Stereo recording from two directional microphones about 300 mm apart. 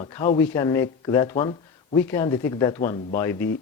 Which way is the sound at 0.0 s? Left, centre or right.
Centre.